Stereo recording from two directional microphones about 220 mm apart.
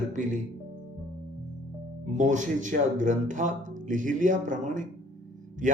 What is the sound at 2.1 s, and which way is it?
Speech, 35° right (ahead or behind).